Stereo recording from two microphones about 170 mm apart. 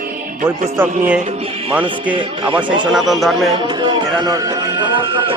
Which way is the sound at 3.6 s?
30° right (ahead or behind).